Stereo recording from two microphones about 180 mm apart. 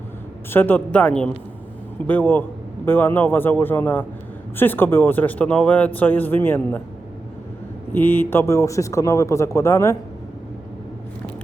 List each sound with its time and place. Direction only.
0.5 s speech: 10° left (ahead or behind)
7.9 s speech: 10° left (ahead or behind)